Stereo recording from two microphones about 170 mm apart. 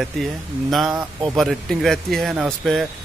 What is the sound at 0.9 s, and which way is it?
Speech, 15° right (ahead or behind).